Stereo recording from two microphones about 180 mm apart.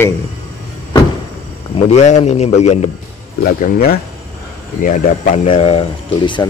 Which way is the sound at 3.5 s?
50° left (ahead or behind).